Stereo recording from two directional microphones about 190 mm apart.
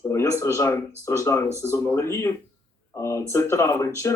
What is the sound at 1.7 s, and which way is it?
Speech, 15° left (ahead or behind).